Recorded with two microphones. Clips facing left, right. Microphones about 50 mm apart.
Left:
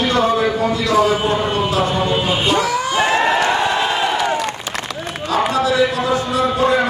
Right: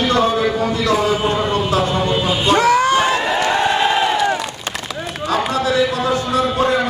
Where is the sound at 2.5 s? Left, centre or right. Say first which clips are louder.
Right 9 dB; right.